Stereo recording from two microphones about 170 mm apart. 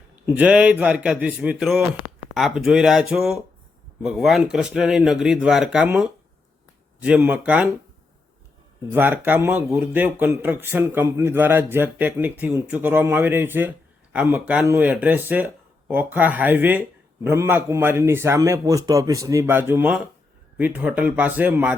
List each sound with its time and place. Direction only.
0.3 s a man's voice: 10° right (ahead or behind)
8.9 s a man's voice: 10° right (ahead or behind)